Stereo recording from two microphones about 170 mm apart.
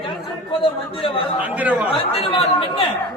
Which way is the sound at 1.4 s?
10° right (ahead or behind).